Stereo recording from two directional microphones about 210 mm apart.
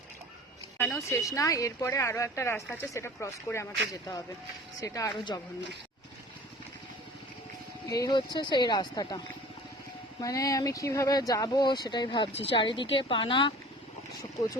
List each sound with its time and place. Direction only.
0.8 s speech: 10° left (ahead or behind)
4.8 s speech: 15° left (ahead or behind)
7.9 s speech: 20° left (ahead or behind)